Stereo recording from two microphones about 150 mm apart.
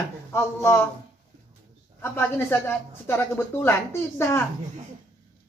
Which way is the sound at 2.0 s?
15° left (ahead or behind).